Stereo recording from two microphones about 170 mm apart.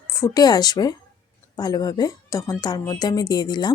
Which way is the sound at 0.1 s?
20° left (ahead or behind).